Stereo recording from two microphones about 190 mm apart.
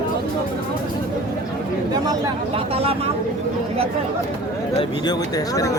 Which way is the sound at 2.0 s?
25° right (ahead or behind).